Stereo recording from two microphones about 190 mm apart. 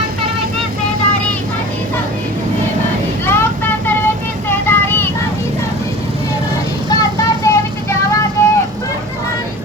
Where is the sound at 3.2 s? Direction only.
10° left (ahead or behind).